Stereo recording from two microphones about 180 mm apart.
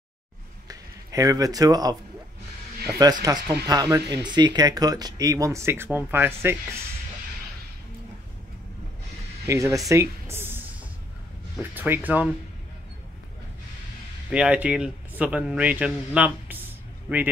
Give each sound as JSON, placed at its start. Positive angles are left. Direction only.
{"t": 0.7, "sound": "speech", "side_deg": -20}
{"t": 3.0, "sound": "speech", "side_deg": -20}
{"t": 9.5, "sound": "speech", "side_deg": -15}
{"t": 14.3, "sound": "speech", "side_deg": -5}